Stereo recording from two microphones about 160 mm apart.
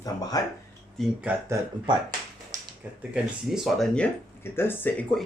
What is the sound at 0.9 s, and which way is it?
Speech, 10° right (ahead or behind).